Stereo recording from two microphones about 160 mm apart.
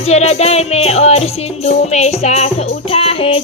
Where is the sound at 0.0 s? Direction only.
45° left (ahead or behind).